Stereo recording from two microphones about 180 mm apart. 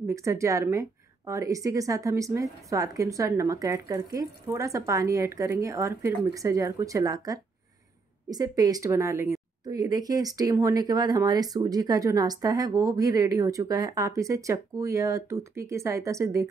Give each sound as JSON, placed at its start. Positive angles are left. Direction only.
{"t": 0.0, "sound": "a woman's voice", "side_deg": -15}